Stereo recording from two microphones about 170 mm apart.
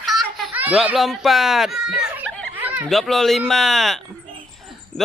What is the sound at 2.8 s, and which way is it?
Speech, centre (ahead or behind).